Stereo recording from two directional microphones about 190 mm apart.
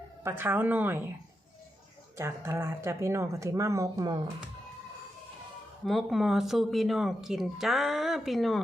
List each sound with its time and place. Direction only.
0.2 s speech: 10° right (ahead or behind)
2.1 s speech: 15° right (ahead or behind)
5.8 s speech: centre (ahead or behind)